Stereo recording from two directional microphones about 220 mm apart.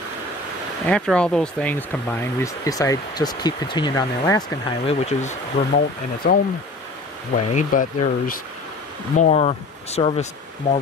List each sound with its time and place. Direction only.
0.8 s speech: 5° left (ahead or behind); by 5.7 s 30° left (ahead or behind)
6.2 s speech: 40° left (ahead or behind)
7.3 s speech: 30° left (ahead or behind)